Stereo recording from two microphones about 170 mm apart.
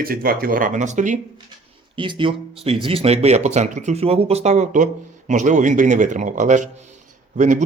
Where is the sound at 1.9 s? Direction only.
30° right (ahead or behind); by 7.6 s 50° right (ahead or behind).